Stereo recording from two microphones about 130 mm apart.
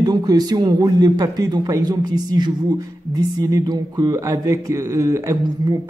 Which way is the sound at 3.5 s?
30° right (ahead or behind).